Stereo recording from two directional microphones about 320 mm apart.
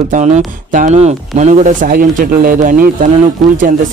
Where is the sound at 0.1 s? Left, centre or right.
Right.